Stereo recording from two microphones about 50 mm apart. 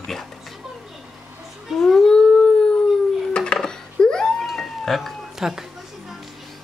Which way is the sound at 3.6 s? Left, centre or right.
Centre.